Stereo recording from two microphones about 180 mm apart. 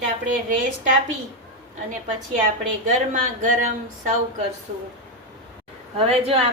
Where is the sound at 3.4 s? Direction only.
45° right (ahead or behind).